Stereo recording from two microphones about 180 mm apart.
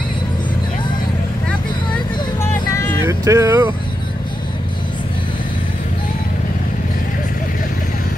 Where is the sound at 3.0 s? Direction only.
15° right (ahead or behind).